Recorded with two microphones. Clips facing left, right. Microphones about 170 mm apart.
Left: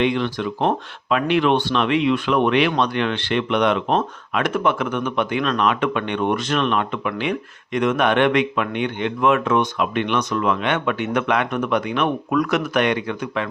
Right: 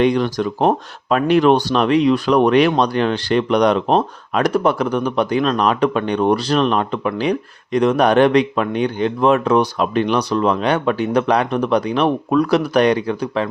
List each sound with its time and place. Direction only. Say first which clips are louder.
0.0 s speech: right 4 dB; 40° right (ahead or behind)